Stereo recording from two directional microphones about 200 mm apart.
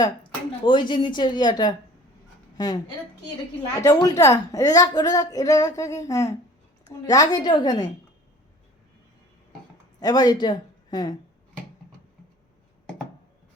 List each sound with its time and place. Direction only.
0.6 s a woman's voice: 25° left (ahead or behind)
10.0 s speech: 20° left (ahead or behind)